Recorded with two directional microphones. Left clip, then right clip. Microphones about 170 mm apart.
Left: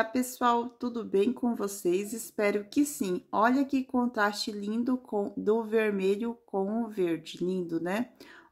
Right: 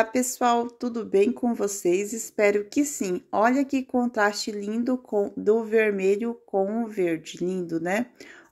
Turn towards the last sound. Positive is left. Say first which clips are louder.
# right 5 dB
turn(degrees=-10)  # may be behind; listen again after turning